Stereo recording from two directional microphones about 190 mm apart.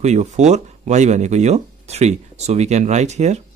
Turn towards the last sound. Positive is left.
turn(degrees=-35)  # may be behind; listen again after turning